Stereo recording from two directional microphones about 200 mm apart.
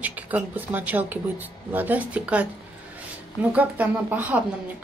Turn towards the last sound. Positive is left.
turn(degrees=-5)  # may be behind; listen again after turning